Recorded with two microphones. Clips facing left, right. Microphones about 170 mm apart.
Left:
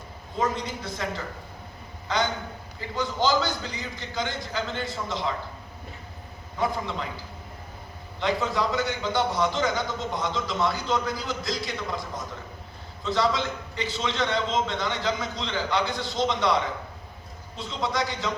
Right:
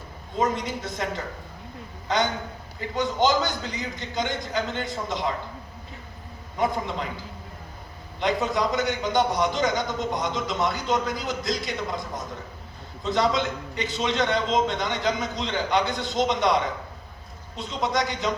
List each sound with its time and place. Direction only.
0.3 s a man's voice: 20° right (ahead or behind)
6.6 s a man's voice: 20° right (ahead or behind)
8.2 s a man's voice: 20° right (ahead or behind)